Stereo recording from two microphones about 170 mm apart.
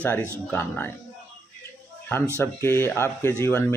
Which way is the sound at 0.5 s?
15° left (ahead or behind).